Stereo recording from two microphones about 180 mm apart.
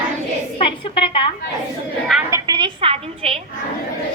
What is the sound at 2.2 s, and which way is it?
A woman's voice, 20° right (ahead or behind).